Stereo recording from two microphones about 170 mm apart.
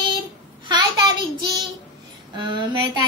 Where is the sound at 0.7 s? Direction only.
25° right (ahead or behind).